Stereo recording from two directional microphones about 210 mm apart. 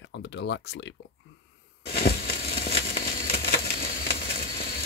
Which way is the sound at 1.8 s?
45° left (ahead or behind).